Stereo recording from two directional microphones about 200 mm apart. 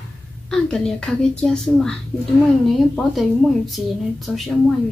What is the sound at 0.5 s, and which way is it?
A woman's voice, 5° left (ahead or behind).